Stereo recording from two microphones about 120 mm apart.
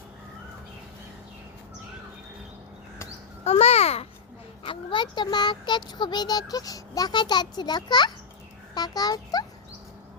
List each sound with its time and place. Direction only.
3.4 s a child's voice: 60° left (ahead or behind)
4.6 s speech: 45° left (ahead or behind)